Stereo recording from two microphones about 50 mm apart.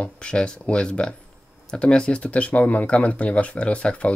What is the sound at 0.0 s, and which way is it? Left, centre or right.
Speech, left.